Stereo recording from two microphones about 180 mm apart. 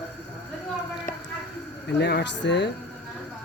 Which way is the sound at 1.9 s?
70° left (ahead or behind).